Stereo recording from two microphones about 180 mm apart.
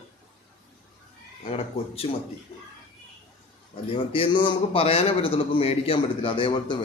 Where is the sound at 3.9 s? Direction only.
30° left (ahead or behind).